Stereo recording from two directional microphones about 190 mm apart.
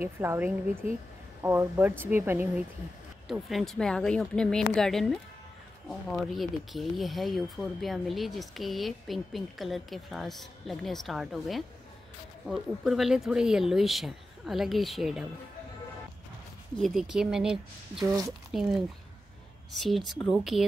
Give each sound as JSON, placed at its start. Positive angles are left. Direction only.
{"t": 0.0, "sound": "speech", "side_deg": -10}
{"t": 3.3, "sound": "speech", "side_deg": 0}
{"t": 16.8, "sound": "speech", "side_deg": -5}
{"t": 18.0, "sound": "speech", "side_deg": -15}
{"t": 18.5, "sound": "speech", "side_deg": 0}